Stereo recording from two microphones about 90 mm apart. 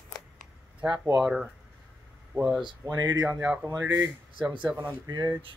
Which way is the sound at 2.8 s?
45° right (ahead or behind).